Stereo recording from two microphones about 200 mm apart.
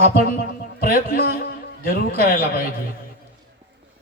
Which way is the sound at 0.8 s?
45° left (ahead or behind).